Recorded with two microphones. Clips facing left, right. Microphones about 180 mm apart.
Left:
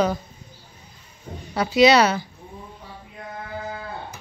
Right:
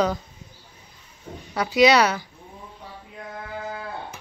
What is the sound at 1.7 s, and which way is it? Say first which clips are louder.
Speech: left 2 dB; 15° right (ahead or behind).